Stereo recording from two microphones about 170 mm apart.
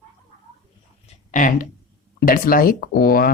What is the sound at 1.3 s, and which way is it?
Speech, 50° left (ahead or behind).